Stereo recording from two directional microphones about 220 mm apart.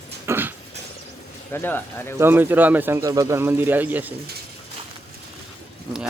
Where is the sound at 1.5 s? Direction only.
10° left (ahead or behind).